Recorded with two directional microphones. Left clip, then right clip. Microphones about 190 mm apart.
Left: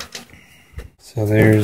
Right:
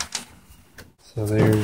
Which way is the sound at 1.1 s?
30° left (ahead or behind).